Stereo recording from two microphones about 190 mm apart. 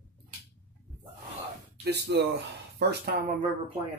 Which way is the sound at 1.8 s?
60° right (ahead or behind).